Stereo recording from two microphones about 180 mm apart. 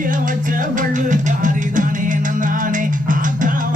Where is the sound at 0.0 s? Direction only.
50° right (ahead or behind).